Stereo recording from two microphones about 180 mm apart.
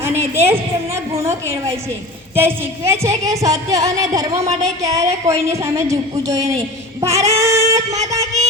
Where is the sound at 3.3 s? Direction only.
20° right (ahead or behind).